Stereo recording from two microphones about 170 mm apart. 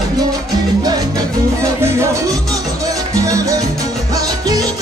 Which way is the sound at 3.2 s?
20° right (ahead or behind).